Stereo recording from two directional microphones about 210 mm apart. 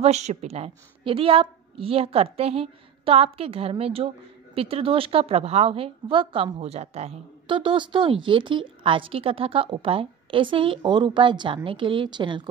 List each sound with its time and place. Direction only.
0.0 s a woman's voice: 30° right (ahead or behind)